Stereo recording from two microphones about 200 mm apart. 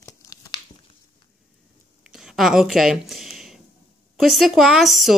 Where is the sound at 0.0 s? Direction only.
20° left (ahead or behind).